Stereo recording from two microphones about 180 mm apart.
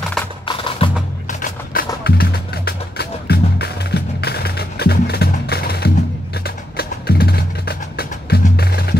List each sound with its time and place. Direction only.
0.5 s wood block: 30° left (ahead or behind)
1.4 s music: 50° left (ahead or behind)